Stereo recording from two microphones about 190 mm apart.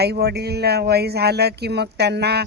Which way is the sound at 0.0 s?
60° right (ahead or behind).